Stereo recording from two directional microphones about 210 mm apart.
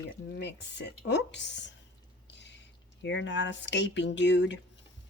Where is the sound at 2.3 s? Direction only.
55° left (ahead or behind).